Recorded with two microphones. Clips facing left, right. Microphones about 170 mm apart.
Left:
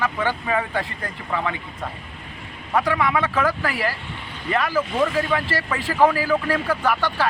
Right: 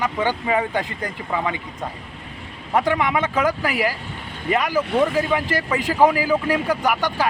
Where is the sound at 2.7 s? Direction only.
25° right (ahead or behind).